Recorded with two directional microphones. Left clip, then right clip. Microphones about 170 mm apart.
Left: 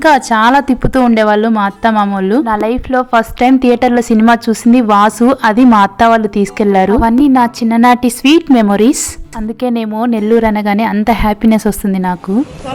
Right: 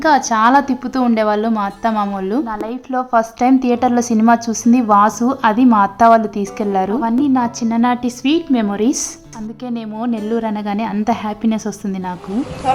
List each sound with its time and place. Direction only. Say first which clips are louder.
0.0 s a woman's voice: left 4 dB; 30° left (ahead or behind)
2.9 s a woman's voice: left 2 dB; 20° left (ahead or behind)